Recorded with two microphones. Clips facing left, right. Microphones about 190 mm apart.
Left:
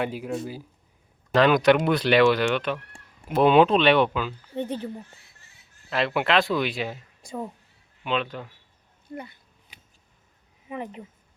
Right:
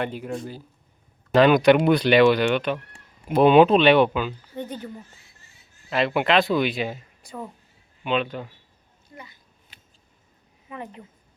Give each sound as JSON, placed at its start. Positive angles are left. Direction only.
{"t": 0.0, "sound": "speech", "side_deg": 5}
{"t": 4.5, "sound": "speech", "side_deg": 30}
{"t": 5.9, "sound": "speech", "side_deg": 0}
{"t": 8.0, "sound": "speech", "side_deg": 0}
{"t": 9.0, "sound": "speech", "side_deg": 60}
{"t": 10.7, "sound": "speech", "side_deg": 20}